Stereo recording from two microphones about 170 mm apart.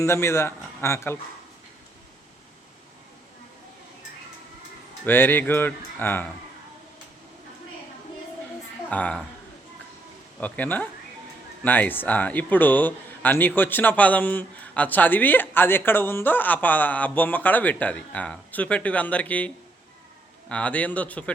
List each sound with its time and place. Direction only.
0.0 s speech: 15° left (ahead or behind)
5.0 s speech: 10° left (ahead or behind)
8.9 s speech: 5° left (ahead or behind)
10.4 s speech: 10° left (ahead or behind)